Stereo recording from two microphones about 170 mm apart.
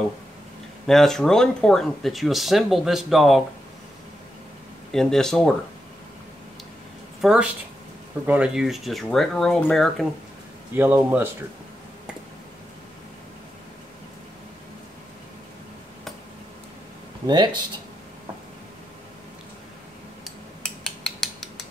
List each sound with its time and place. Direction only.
0.8 s speech: centre (ahead or behind)
4.9 s speech: 5° left (ahead or behind)
7.2 s speech: centre (ahead or behind)
10.7 s a man's voice: 10° right (ahead or behind)
17.3 s speech: 25° right (ahead or behind)
20.6 s cutlery: 5° left (ahead or behind)